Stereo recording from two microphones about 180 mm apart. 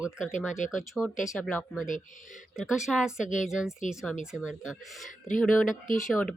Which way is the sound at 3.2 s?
45° left (ahead or behind).